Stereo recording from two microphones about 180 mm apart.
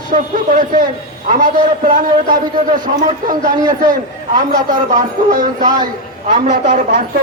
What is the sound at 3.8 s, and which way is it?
A man's voice, 45° right (ahead or behind).